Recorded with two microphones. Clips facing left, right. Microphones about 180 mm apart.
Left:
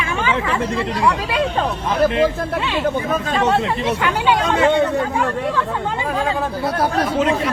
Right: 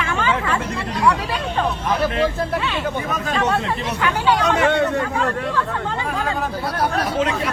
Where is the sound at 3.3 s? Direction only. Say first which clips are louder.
Left 2 dB; 25° left (ahead or behind).